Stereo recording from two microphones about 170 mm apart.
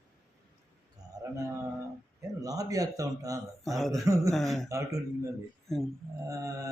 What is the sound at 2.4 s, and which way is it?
Speech, 20° right (ahead or behind).